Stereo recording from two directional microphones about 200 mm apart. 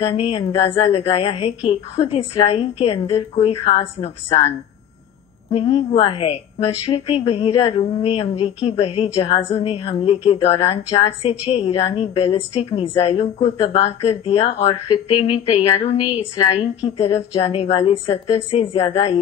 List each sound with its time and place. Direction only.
0.0 s a woman's voice: 25° left (ahead or behind)
5.5 s a woman's voice: 30° left (ahead or behind)